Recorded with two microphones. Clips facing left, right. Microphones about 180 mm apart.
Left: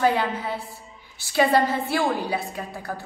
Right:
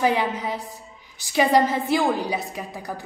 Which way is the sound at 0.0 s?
15° right (ahead or behind).